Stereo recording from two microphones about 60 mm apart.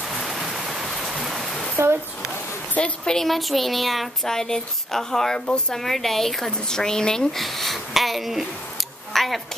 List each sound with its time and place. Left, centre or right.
0.1 s rain: centre
2.8 s a sound: centre
3.1 s a woman's voice: centre